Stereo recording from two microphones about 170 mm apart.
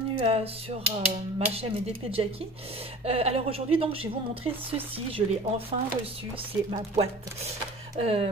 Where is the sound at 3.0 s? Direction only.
35° right (ahead or behind).